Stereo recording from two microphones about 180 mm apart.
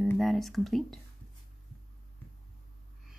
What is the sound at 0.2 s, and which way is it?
Speech, centre (ahead or behind).